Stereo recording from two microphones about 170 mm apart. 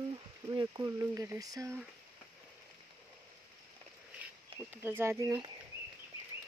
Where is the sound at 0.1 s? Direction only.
25° right (ahead or behind).